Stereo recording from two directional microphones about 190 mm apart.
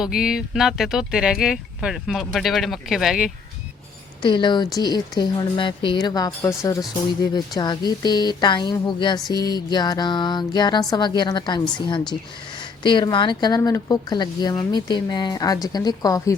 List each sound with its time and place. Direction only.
0.0 s speech: 5° right (ahead or behind)
4.2 s speech: 25° left (ahead or behind)